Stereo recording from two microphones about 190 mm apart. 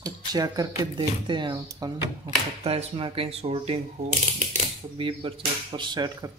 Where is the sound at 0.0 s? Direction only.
20° right (ahead or behind).